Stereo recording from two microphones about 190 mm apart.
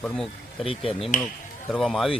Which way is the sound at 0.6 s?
30° left (ahead or behind).